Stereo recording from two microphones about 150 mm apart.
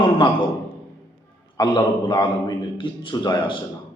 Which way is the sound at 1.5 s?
30° left (ahead or behind).